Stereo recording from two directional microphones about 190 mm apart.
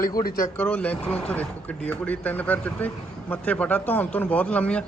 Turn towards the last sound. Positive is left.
turn(degrees=5)  # may be behind; listen again after turning